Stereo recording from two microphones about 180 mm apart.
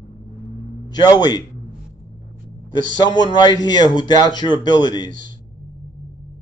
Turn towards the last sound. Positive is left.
turn(degrees=25)  # may be behind; listen again after turning